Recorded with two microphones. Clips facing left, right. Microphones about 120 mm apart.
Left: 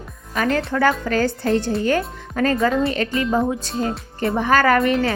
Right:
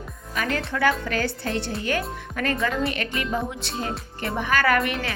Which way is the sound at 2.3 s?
30° left (ahead or behind).